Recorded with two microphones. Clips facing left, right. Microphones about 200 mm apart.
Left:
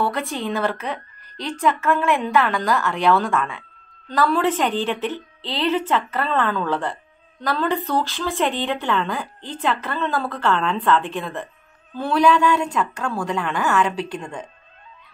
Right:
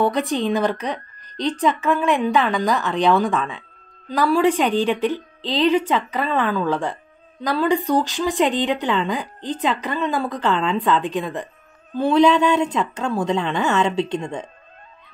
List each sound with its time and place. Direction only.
0.0 s a woman's voice: 15° right (ahead or behind)